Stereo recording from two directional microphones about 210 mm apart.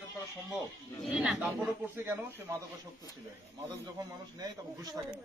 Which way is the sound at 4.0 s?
20° right (ahead or behind).